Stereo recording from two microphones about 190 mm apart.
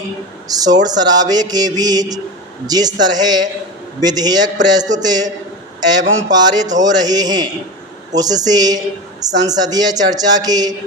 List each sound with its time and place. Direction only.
0.4 s a woman's voice: 20° right (ahead or behind)
6.3 s a woman's voice: 20° right (ahead or behind)